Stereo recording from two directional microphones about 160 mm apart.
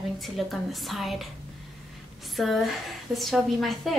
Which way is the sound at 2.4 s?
Centre (ahead or behind).